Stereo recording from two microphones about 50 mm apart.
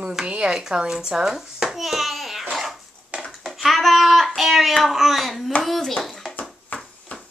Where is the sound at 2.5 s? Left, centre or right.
Centre.